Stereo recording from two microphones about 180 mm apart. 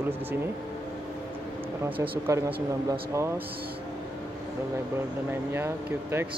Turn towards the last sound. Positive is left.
turn(degrees=-10)  # may be behind; listen again after turning